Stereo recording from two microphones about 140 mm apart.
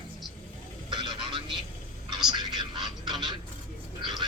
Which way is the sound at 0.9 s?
35° right (ahead or behind).